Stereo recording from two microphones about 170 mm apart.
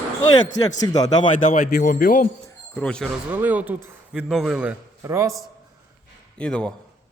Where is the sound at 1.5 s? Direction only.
50° left (ahead or behind).